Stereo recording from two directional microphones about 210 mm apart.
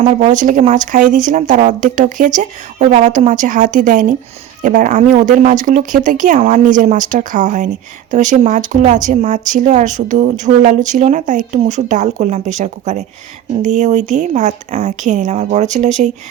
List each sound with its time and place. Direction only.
0.0 s speech: 30° right (ahead or behind)